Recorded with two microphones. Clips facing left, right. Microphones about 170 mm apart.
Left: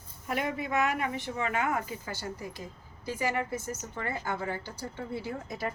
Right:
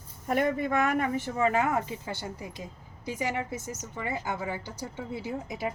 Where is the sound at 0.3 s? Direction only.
45° right (ahead or behind).